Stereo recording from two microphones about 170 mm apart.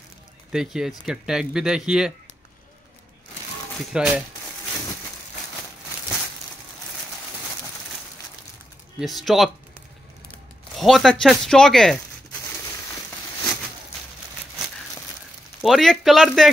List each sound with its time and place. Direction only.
0.5 s speech: 5° right (ahead or behind)
3.9 s speech: 5° right (ahead or behind)
9.0 s speech: centre (ahead or behind)
10.8 s speech: centre (ahead or behind)
15.6 s speech: centre (ahead or behind)